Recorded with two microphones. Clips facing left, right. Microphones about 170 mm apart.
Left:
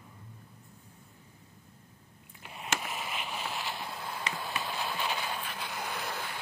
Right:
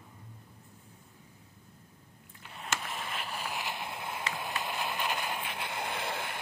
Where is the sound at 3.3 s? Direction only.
15° right (ahead or behind).